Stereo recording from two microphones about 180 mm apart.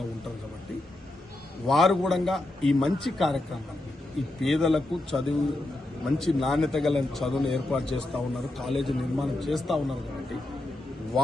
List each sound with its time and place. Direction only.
1.6 s a man's voice: centre (ahead or behind)